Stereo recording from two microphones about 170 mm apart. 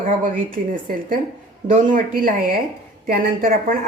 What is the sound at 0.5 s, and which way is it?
A woman's voice, 55° right (ahead or behind).